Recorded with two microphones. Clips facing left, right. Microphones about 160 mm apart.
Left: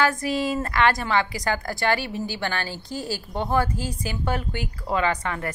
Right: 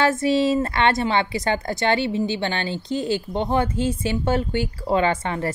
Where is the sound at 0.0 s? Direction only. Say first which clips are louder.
Right 4 dB; 25° right (ahead or behind).